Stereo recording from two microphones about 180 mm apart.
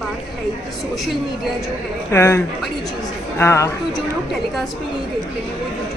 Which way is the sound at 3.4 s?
15° left (ahead or behind).